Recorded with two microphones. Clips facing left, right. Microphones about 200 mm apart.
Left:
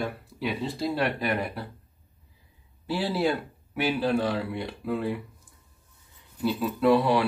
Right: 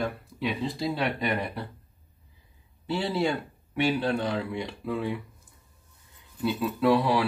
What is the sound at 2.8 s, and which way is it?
Speech, 5° left (ahead or behind).